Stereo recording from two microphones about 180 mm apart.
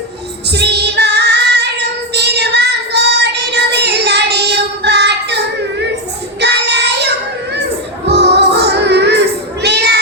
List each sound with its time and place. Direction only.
0.4 s child singing: 65° right (ahead or behind)
6.4 s child singing: 70° right (ahead or behind)
8.0 s music: 70° right (ahead or behind)